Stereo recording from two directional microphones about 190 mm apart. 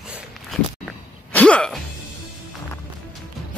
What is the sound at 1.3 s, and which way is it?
Speech, 5° left (ahead or behind).